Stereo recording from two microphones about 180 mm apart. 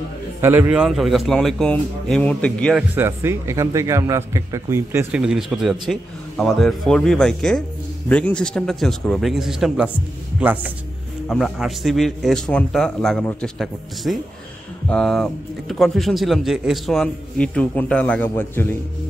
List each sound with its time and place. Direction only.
0.4 s a man's voice: 10° right (ahead or behind); by 2.8 s 5° left (ahead or behind)
2.9 s a man's voice: 15° right (ahead or behind)
5.2 s a man's voice: centre (ahead or behind)
11.2 s a man's voice: centre (ahead or behind)